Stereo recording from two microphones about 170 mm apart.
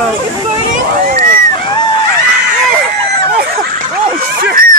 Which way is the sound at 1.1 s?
50° right (ahead or behind).